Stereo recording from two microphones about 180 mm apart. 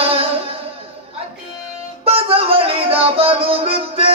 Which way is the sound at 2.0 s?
30° right (ahead or behind).